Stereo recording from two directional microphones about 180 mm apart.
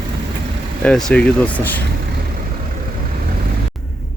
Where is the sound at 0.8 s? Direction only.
5° left (ahead or behind).